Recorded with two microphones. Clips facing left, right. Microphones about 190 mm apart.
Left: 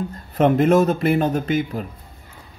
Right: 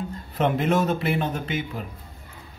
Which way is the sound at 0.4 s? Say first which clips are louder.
Left 7 dB; 45° left (ahead or behind).